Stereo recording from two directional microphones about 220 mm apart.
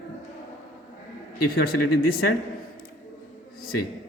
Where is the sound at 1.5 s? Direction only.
45° left (ahead or behind).